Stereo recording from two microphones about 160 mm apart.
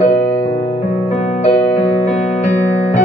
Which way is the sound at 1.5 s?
10° left (ahead or behind).